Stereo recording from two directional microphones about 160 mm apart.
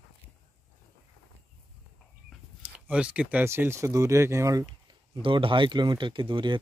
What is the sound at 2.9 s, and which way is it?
Speech, 5° right (ahead or behind).